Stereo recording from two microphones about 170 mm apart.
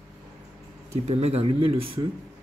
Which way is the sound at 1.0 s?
40° right (ahead or behind).